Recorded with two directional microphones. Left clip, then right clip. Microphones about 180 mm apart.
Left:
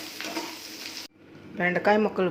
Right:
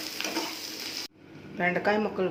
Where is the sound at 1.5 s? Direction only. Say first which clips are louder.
Left 3 dB; 20° left (ahead or behind).